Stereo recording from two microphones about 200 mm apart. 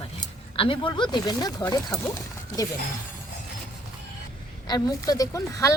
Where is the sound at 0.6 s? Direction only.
25° left (ahead or behind).